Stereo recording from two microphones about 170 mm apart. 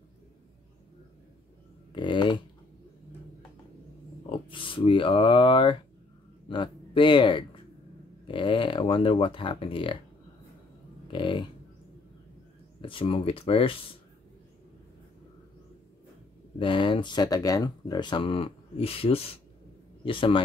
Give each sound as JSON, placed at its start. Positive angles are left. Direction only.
{"t": 1.9, "sound": "speech", "side_deg": 25}
{"t": 4.3, "sound": "a sound", "side_deg": 30}
{"t": 8.3, "sound": "speech", "side_deg": 30}
{"t": 11.1, "sound": "speech", "side_deg": 30}
{"t": 12.8, "sound": "speech", "side_deg": 30}
{"t": 16.5, "sound": "speech", "side_deg": 30}